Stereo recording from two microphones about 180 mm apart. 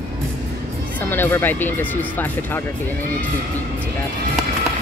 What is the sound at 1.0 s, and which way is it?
Speech, 10° left (ahead or behind).